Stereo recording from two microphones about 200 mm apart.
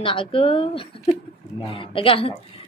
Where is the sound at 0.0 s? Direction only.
25° left (ahead or behind).